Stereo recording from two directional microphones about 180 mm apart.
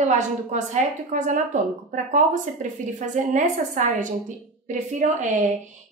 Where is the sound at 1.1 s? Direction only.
45° right (ahead or behind).